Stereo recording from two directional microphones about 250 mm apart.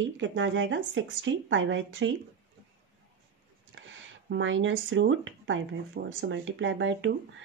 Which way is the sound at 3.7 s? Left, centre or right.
Right.